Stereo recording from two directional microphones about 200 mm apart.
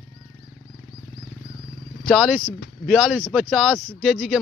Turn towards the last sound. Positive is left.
turn(degrees=0)  # may be behind; listen again after turning